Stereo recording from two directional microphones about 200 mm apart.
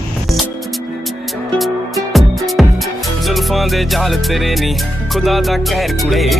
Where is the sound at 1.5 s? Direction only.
Centre (ahead or behind).